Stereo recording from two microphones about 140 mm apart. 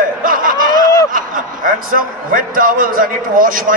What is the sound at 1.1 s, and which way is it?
A man's voice, 75° right (ahead or behind).